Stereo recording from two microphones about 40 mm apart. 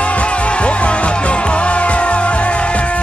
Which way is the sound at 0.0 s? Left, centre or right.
Left.